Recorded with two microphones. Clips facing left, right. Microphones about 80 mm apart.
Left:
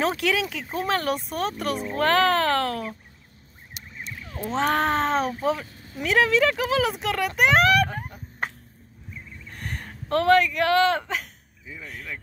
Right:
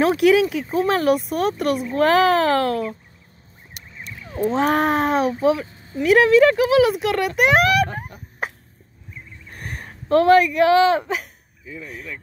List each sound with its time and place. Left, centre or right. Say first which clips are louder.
0.0 s a child's voice: right 9 dB; centre
0.7 s a child's voice: right 7 dB; centre
4.5 s a child's voice: right 4 dB; centre